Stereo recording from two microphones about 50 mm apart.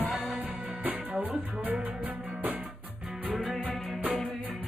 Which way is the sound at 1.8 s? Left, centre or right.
Right.